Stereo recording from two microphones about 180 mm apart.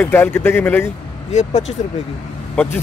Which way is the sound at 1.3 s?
40° left (ahead or behind).